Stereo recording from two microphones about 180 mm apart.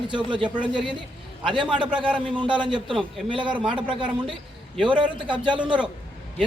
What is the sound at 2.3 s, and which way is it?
Speech, 25° right (ahead or behind).